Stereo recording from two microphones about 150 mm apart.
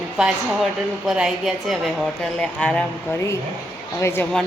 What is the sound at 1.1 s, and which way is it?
Speech, 5° right (ahead or behind).